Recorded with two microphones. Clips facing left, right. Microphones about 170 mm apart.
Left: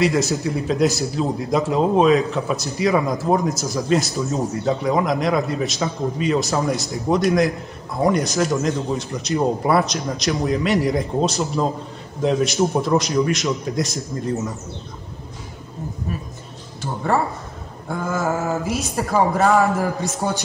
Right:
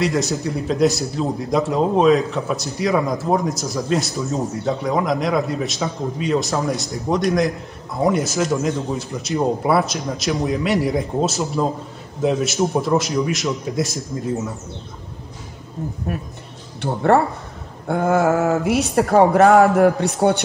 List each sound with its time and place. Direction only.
0.0 s speech: centre (ahead or behind)
16.8 s speech: 65° right (ahead or behind)